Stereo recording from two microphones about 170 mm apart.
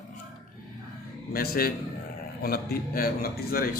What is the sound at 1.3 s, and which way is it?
Speech, 60° left (ahead or behind).